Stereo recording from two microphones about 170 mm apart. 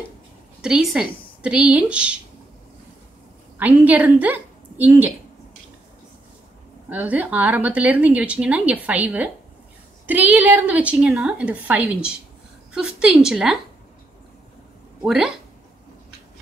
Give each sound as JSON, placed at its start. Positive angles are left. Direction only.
{"t": 0.6, "sound": "speech", "side_deg": -5}
{"t": 3.5, "sound": "a woman's voice", "side_deg": -10}
{"t": 6.9, "sound": "a woman's voice", "side_deg": -10}
{"t": 15.0, "sound": "a woman's voice", "side_deg": -5}